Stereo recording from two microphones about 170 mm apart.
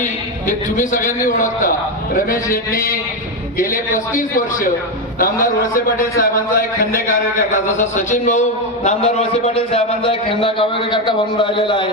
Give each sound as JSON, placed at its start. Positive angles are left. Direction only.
{"t": 0.4, "sound": "a man's voice", "side_deg": 50}